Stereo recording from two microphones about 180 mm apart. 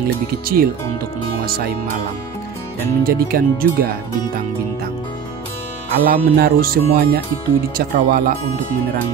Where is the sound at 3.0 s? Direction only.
55° right (ahead or behind).